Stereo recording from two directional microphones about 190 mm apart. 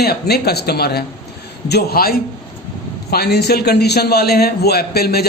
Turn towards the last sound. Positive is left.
turn(degrees=55)  # may be behind; listen again after turning